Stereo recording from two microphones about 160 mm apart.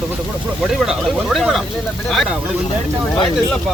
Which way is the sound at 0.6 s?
5° right (ahead or behind).